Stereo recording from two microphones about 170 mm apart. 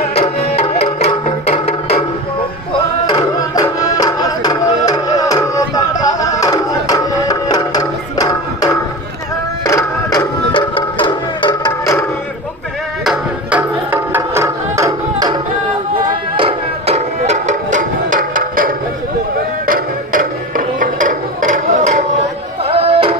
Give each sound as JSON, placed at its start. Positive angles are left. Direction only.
{"t": 0.1, "sound": "tabla", "side_deg": 35}
{"t": 3.1, "sound": "music", "side_deg": 25}
{"t": 13.0, "sound": "music", "side_deg": -5}
{"t": 16.3, "sound": "music", "side_deg": -35}
{"t": 22.7, "sound": "music", "side_deg": -35}